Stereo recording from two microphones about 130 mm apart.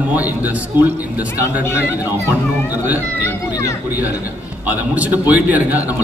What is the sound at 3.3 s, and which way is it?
Speech, 25° left (ahead or behind).